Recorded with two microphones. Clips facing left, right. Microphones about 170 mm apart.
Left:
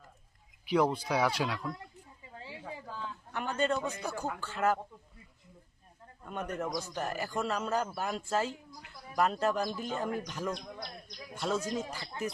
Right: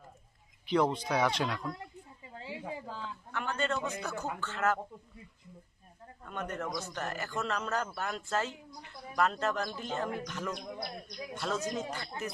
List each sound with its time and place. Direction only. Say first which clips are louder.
0.6 s speech: even; 5° left (ahead or behind)
2.5 s a sound: right 4 dB; 15° right (ahead or behind)
3.3 s a man's voice: left 2 dB; 15° left (ahead or behind)
6.2 s a man's voice: left 1 dB; 10° left (ahead or behind)